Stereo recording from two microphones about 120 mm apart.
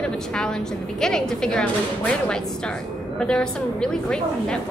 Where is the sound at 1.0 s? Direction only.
5° left (ahead or behind).